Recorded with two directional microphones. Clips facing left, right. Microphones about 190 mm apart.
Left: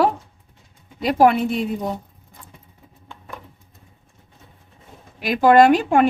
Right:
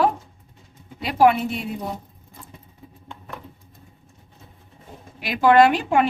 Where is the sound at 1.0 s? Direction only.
40° left (ahead or behind).